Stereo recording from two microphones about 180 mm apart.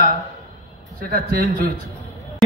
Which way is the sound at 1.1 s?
50° right (ahead or behind).